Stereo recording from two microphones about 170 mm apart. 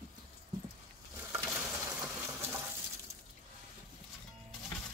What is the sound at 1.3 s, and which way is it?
Coin, 10° right (ahead or behind).